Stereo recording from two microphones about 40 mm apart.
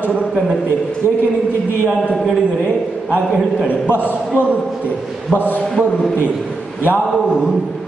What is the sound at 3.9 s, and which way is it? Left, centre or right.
A man's voice, left.